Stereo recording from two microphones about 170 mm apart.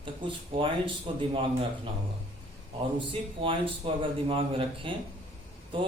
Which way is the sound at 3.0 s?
30° right (ahead or behind).